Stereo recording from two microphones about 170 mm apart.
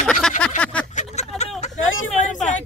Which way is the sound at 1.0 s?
40° left (ahead or behind).